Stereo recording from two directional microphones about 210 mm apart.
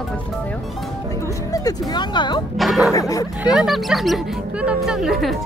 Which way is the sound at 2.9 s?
15° left (ahead or behind).